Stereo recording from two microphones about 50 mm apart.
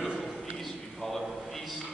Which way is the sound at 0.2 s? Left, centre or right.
Centre.